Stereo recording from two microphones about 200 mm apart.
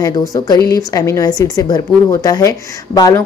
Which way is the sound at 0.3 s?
20° left (ahead or behind).